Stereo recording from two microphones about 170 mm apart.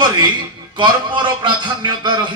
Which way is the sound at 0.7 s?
25° right (ahead or behind).